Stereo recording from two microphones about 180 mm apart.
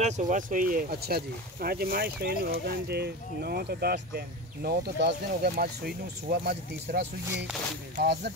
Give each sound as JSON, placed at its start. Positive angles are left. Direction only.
{"t": 0.0, "sound": "speech", "side_deg": -45}